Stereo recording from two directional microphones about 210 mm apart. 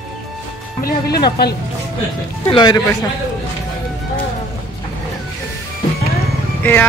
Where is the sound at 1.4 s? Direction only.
50° left (ahead or behind).